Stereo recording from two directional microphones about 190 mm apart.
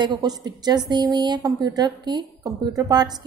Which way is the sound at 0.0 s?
20° right (ahead or behind).